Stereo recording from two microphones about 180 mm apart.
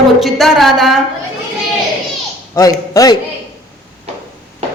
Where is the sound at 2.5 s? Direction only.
20° left (ahead or behind).